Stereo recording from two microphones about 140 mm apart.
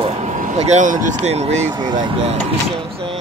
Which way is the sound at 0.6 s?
55° right (ahead or behind).